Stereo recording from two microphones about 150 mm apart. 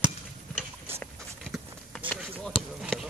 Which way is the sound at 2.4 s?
5° right (ahead or behind).